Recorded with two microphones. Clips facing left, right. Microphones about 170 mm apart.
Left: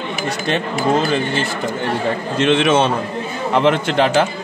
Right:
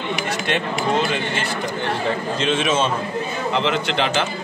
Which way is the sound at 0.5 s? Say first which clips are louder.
Left 4 dB; 35° left (ahead or behind).